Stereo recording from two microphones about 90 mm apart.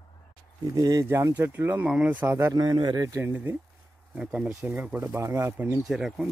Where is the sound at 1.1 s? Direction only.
30° right (ahead or behind).